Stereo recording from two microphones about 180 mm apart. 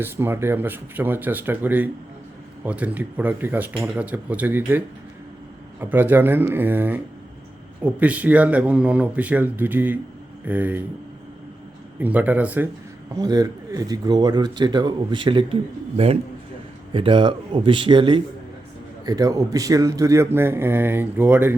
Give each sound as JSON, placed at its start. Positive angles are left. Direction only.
{"t": 0.0, "sound": "speech", "side_deg": -10}
{"t": 5.8, "sound": "speech", "side_deg": -10}
{"t": 11.9, "sound": "speech", "side_deg": -10}
{"t": 13.1, "sound": "speech", "side_deg": -20}